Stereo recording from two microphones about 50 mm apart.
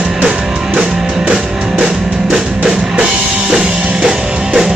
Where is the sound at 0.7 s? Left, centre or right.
Right.